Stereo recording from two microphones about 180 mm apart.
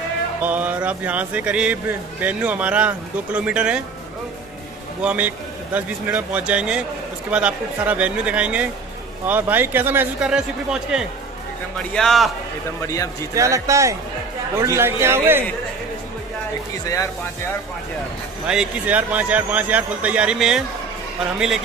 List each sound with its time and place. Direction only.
0.4 s speech: 10° right (ahead or behind)
5.0 s a man's voice: 10° right (ahead or behind)
12.8 s speech: 15° left (ahead or behind)
13.3 s speech: 15° right (ahead or behind)
16.8 s speech: 20° left (ahead or behind)
18.5 s speech: 5° right (ahead or behind)